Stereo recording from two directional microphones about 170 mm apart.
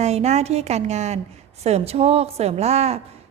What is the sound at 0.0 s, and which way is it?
A woman's voice, 40° right (ahead or behind).